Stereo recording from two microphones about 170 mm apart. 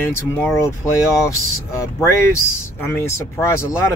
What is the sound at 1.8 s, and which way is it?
Speech, 15° left (ahead or behind).